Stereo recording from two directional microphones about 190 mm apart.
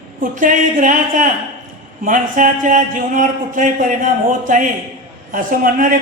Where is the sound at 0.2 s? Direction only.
45° right (ahead or behind).